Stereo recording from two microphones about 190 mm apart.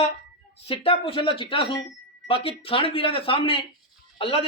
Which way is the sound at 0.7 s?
30° left (ahead or behind).